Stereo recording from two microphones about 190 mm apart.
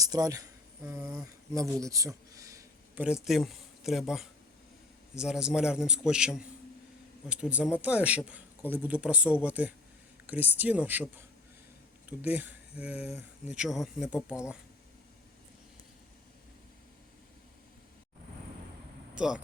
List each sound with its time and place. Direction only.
0.0 s speech: 20° right (ahead or behind); by 14.2 s 5° right (ahead or behind)
19.1 s speech: 5° right (ahead or behind)